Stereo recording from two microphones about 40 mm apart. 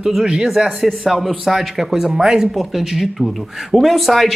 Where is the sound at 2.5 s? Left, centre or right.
Centre.